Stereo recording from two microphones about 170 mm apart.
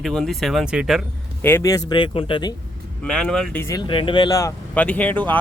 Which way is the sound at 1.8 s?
30° left (ahead or behind).